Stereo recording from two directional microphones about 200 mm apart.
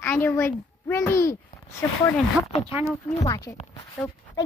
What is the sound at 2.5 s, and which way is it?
Speech, 30° left (ahead or behind).